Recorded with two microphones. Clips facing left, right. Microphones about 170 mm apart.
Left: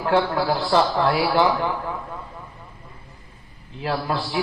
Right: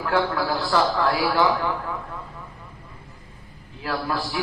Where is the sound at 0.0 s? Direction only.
25° left (ahead or behind).